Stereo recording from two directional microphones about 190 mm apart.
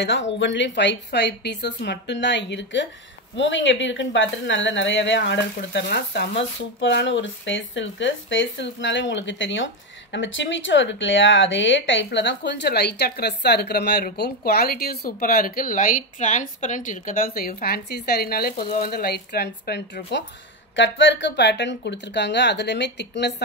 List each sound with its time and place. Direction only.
0.0 s speech: 70° left (ahead or behind)